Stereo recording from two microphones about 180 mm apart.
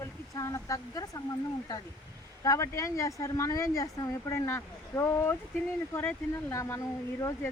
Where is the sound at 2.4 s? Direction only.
20° left (ahead or behind).